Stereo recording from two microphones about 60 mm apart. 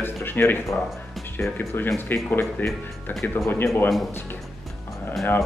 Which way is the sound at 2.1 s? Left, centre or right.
Left.